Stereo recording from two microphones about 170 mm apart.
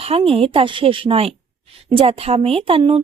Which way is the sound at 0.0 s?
35° right (ahead or behind).